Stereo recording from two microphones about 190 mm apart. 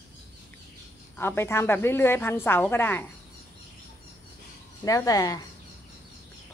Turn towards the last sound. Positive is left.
turn(degrees=20)  # may be behind; listen again after turning